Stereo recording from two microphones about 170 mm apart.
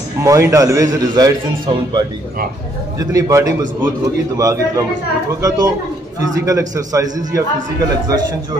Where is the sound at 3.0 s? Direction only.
20° right (ahead or behind).